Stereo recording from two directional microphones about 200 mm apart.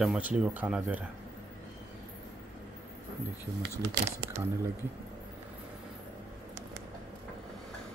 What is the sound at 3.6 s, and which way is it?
Speech, 60° right (ahead or behind).